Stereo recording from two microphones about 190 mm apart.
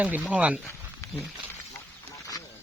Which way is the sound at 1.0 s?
15° left (ahead or behind).